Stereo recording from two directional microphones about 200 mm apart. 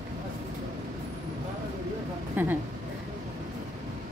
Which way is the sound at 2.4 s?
10° right (ahead or behind).